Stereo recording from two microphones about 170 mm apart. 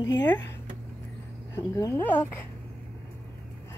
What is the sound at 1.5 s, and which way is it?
Speech, 15° left (ahead or behind).